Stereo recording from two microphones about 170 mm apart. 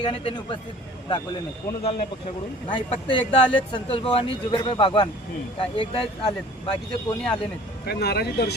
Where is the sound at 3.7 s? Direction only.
30° left (ahead or behind).